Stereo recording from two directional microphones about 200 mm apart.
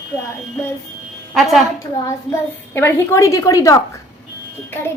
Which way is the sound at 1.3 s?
Centre (ahead or behind).